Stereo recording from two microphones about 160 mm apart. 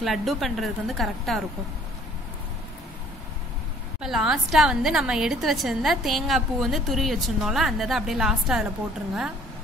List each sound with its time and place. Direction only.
0.0 s a woman's voice: centre (ahead or behind)
4.0 s a woman's voice: 5° right (ahead or behind)